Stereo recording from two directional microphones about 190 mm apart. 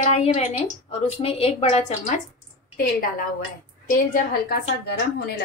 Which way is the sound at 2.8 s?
50° left (ahead or behind).